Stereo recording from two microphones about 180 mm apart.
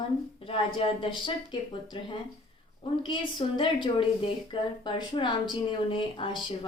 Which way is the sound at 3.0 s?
25° left (ahead or behind).